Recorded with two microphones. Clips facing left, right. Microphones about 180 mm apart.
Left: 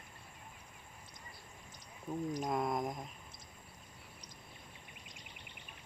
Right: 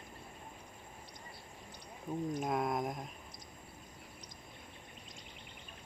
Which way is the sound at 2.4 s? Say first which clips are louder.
Even; centre (ahead or behind).